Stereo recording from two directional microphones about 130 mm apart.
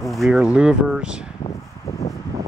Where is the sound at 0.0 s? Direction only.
Centre (ahead or behind).